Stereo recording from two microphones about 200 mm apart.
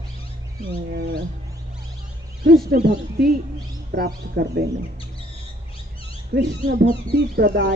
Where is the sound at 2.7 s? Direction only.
55° right (ahead or behind).